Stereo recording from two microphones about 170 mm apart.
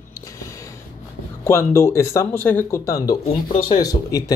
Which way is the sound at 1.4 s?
15° left (ahead or behind).